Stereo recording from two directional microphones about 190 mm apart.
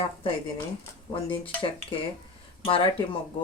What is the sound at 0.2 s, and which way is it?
Speech, 30° left (ahead or behind).